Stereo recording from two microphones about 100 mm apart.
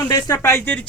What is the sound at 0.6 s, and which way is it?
Speech, 15° left (ahead or behind).